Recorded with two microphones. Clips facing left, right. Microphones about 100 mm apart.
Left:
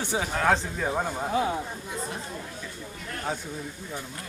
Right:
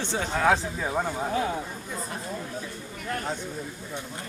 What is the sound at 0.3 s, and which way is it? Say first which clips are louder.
Speech: right 2 dB; centre (ahead or behind).